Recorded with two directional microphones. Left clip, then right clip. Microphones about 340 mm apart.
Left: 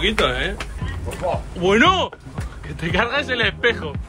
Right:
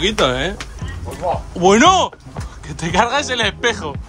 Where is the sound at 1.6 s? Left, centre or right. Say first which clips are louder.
Right 5 dB; centre.